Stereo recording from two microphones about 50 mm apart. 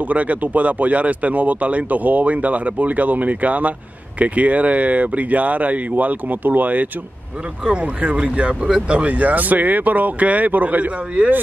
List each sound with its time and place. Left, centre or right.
0.0 s speech: right
7.6 s speech: right